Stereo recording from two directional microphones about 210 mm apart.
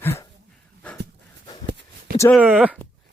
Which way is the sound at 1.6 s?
55° right (ahead or behind).